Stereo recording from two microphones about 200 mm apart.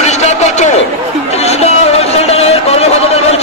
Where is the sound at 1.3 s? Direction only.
30° left (ahead or behind).